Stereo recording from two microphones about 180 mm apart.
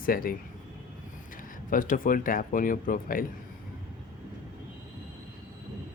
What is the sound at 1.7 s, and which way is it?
Speech, 50° left (ahead or behind).